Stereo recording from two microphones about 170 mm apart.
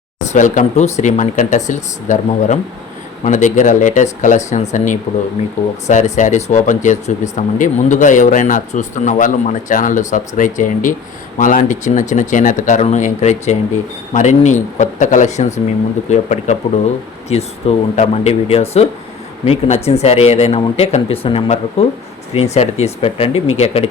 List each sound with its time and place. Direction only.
0.3 s speech: 50° left (ahead or behind)